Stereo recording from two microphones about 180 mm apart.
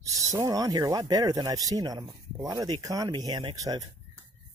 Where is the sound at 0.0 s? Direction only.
15° right (ahead or behind).